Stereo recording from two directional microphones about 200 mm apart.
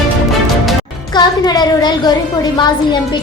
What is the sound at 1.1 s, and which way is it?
A woman's voice, 20° left (ahead or behind).